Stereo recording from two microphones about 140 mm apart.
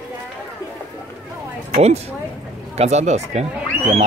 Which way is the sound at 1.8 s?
50° right (ahead or behind).